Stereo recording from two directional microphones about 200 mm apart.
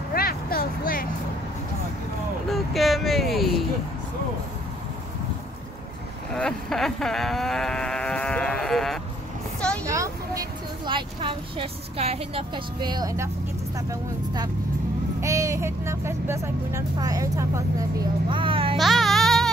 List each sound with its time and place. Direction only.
0.1 s a sound: 50° left (ahead or behind)
2.5 s a sound: centre (ahead or behind)
6.3 s sheep: 5° left (ahead or behind)
9.8 s vehicle: 15° right (ahead or behind)
10.9 s a woman's voice: 25° right (ahead or behind)
15.1 s speech: 15° right (ahead or behind)
18.8 s baby cry: centre (ahead or behind)